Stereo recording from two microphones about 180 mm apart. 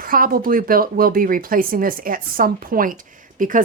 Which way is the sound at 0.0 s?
50° right (ahead or behind).